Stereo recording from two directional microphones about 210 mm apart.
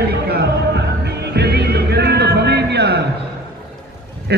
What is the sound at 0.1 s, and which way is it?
Music, 50° right (ahead or behind).